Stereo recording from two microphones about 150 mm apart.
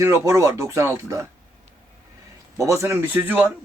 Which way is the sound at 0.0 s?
20° right (ahead or behind).